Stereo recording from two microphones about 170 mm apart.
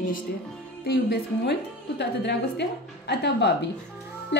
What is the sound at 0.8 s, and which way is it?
A woman's voice, 75° left (ahead or behind).